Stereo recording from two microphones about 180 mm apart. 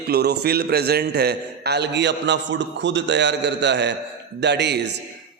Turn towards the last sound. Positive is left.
turn(degrees=-70)  # may be behind; listen again after turning